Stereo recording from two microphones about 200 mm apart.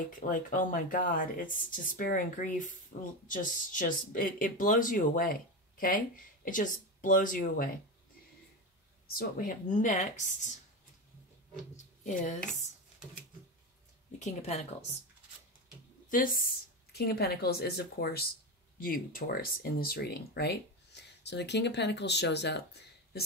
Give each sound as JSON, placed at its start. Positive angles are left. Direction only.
{"t": 0.1, "sound": "speech", "side_deg": 40}
{"t": 9.1, "sound": "speech", "side_deg": 45}
{"t": 11.7, "sound": "speech", "side_deg": 35}
{"t": 14.2, "sound": "speech", "side_deg": 35}
{"t": 16.1, "sound": "speech", "side_deg": 45}